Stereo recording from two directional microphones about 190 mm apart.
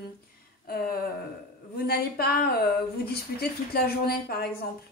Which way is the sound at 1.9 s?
55° left (ahead or behind).